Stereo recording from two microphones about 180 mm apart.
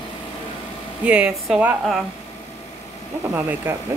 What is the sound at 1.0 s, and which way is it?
Speech, 5° right (ahead or behind).